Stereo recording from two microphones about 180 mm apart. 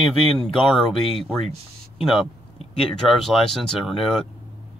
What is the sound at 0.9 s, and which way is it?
Speech, 30° left (ahead or behind).